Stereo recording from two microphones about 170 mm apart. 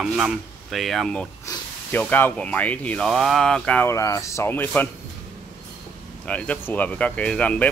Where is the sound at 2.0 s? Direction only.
10° left (ahead or behind).